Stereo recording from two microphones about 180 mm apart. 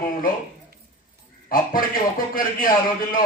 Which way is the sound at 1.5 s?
50° left (ahead or behind).